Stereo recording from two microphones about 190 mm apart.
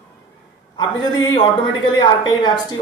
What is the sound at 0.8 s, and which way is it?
Speech, 20° left (ahead or behind).